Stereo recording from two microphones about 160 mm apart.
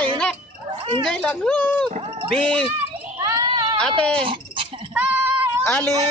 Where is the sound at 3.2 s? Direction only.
25° right (ahead or behind).